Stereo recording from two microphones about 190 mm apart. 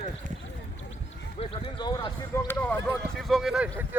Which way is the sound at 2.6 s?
10° left (ahead or behind).